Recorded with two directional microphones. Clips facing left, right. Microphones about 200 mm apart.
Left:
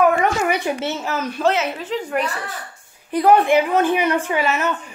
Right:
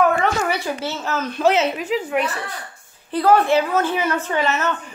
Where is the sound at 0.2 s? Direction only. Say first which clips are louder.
Left 2 dB; 15° left (ahead or behind).